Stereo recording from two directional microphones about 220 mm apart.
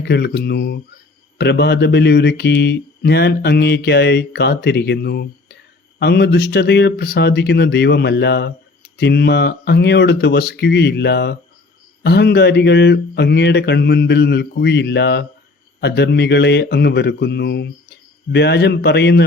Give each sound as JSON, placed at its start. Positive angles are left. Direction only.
{"t": 0.0, "sound": "speech", "side_deg": 50}